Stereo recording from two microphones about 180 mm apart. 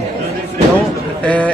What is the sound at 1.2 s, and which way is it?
Speech, 10° left (ahead or behind).